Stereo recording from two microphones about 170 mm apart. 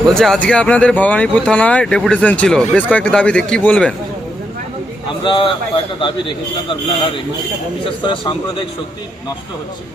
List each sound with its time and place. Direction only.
0.1 s speech: 5° left (ahead or behind)
5.2 s speech: 30° left (ahead or behind)
7.9 s speech: 30° left (ahead or behind)